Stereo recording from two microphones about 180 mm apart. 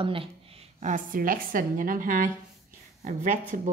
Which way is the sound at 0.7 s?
45° right (ahead or behind).